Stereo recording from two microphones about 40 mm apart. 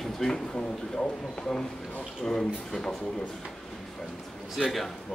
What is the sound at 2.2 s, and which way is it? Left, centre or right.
Speech, centre.